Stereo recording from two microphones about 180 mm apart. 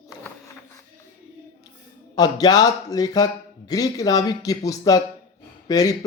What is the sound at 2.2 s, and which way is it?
A man's voice, 20° left (ahead or behind).